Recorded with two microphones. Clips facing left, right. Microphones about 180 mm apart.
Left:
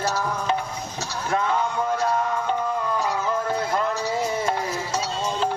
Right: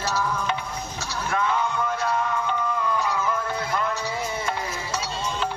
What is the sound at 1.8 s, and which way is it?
Music, 40° left (ahead or behind).